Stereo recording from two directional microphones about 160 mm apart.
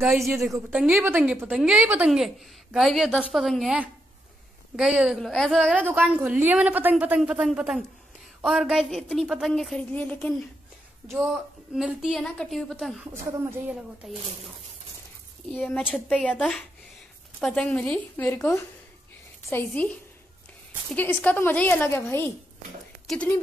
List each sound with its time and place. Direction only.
0.7 s a woman's voice: 5° right (ahead or behind)
5.8 s a woman's voice: 10° right (ahead or behind)
11.7 s a woman's voice: 5° right (ahead or behind)
13.1 s a woman's voice: 15° right (ahead or behind)
14.0 s a woman's voice: 5° right (ahead or behind)
15.7 s a woman's voice: 10° left (ahead or behind)